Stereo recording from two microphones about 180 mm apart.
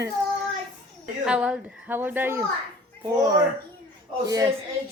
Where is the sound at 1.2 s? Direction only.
5° right (ahead or behind).